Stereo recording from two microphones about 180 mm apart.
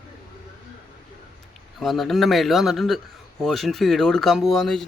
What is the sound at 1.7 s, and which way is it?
Speech, centre (ahead or behind).